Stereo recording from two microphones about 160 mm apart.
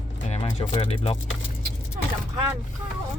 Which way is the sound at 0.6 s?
35° left (ahead or behind).